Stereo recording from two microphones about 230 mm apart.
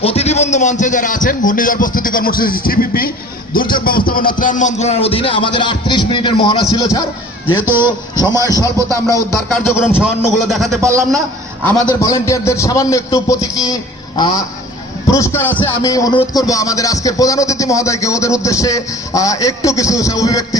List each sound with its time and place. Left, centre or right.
0.0 s a man's voice: left
7.6 s speech: centre
8.1 s a man's voice: centre
8.9 s speech: centre
9.6 s a man's voice: centre
10.8 s speech: centre
11.6 s a man's voice: centre